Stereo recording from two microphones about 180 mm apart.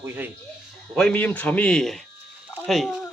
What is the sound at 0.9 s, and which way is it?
Speech, 5° left (ahead or behind).